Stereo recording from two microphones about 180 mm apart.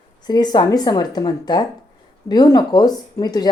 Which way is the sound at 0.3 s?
25° left (ahead or behind).